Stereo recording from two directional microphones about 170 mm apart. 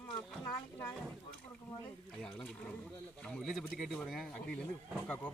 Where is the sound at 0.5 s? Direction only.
15° left (ahead or behind).